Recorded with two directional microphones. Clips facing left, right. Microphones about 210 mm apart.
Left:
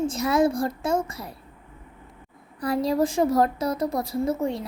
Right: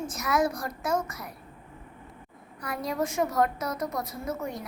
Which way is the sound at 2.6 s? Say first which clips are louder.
Left 8 dB; 30° left (ahead or behind).